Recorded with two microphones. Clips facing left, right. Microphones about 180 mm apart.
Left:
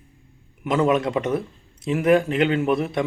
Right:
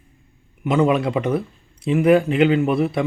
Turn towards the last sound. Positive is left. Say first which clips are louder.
# right 2 dB
turn(degrees=0)  # may be behind; listen again after turning